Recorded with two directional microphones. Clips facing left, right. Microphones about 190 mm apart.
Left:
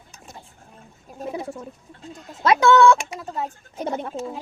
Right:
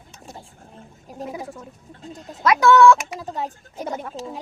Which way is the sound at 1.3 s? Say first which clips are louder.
Left 3 dB; 30° left (ahead or behind).